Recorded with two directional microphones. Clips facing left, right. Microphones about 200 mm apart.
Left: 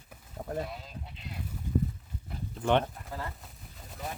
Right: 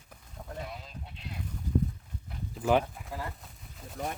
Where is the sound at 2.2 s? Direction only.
Centre (ahead or behind).